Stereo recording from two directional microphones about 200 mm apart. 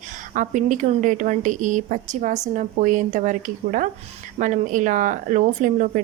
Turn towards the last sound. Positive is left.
turn(degrees=-40)  # may be behind; listen again after turning